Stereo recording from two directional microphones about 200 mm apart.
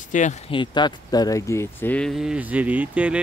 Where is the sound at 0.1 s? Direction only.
35° left (ahead or behind).